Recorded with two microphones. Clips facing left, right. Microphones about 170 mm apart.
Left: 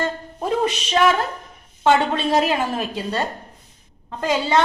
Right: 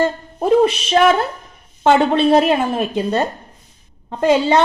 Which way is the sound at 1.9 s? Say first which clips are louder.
Right 5 dB; 30° right (ahead or behind).